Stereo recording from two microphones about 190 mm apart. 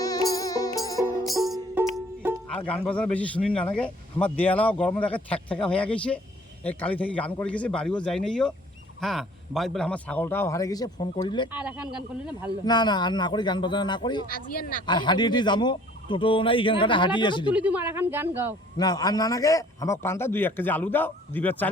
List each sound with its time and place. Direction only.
0.0 s music: 20° left (ahead or behind)
1.3 s music: centre (ahead or behind)
1.8 s music: 10° right (ahead or behind)
2.6 s speech: 5° left (ahead or behind); by 11.4 s 25° left (ahead or behind)
11.5 s a woman's voice: 5° right (ahead or behind)
12.6 s speech: 20° left (ahead or behind)
14.5 s speech: 50° left (ahead or behind)
14.8 s speech: 25° left (ahead or behind)
17.5 s a woman's voice: 5° right (ahead or behind)
18.8 s speech: 20° left (ahead or behind)